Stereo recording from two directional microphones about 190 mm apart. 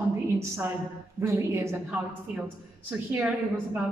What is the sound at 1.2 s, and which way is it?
Speech, 15° right (ahead or behind).